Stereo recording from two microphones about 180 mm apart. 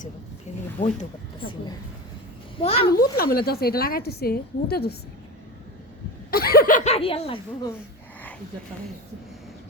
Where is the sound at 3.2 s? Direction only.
55° left (ahead or behind).